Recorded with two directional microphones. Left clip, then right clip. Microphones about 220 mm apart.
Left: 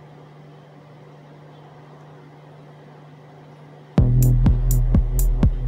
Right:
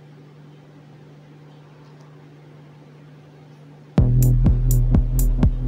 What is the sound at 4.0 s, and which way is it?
Music, centre (ahead or behind).